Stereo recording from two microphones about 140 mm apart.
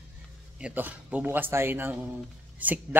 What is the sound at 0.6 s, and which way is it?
A man's voice, 10° right (ahead or behind).